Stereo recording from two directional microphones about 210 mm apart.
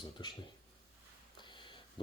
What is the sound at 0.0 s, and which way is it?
Speech, 20° left (ahead or behind).